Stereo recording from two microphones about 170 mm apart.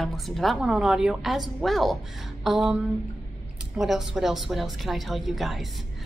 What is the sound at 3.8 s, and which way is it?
A woman's voice, centre (ahead or behind).